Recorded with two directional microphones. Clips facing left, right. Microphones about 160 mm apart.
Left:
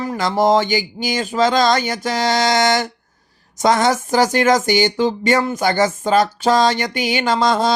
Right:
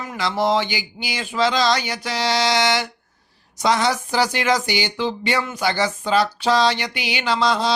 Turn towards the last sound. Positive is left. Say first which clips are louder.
# left 4 dB
turn(degrees=45)  # may be behind; listen again after turning